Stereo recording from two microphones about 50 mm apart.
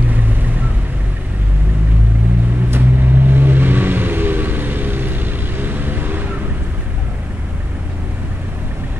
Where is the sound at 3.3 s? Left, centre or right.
Right.